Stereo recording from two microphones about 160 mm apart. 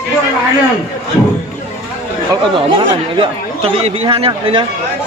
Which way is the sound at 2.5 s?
30° right (ahead or behind).